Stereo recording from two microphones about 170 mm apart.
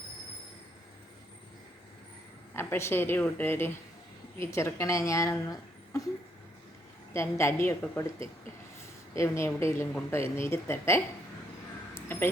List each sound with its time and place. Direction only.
2.5 s a woman's voice: 15° left (ahead or behind)
7.1 s a woman's voice: 15° left (ahead or behind)
9.1 s a woman's voice: 15° left (ahead or behind)
11.9 s a sound: 15° left (ahead or behind)